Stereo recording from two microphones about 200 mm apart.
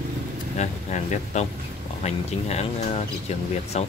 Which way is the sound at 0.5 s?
35° left (ahead or behind).